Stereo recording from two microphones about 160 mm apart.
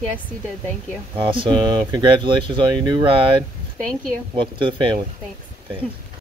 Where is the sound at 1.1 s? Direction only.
30° right (ahead or behind).